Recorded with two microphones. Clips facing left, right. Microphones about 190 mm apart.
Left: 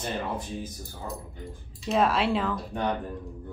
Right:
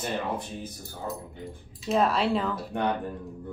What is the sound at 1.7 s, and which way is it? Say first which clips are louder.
Speech: even; centre (ahead or behind).